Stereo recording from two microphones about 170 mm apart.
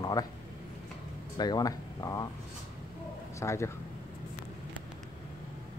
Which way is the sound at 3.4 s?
15° left (ahead or behind).